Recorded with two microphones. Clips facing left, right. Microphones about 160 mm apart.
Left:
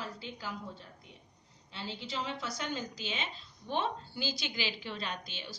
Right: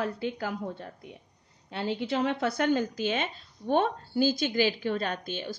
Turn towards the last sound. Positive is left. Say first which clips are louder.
# right 9 dB
turn(degrees=-50)  # may be behind; listen again after turning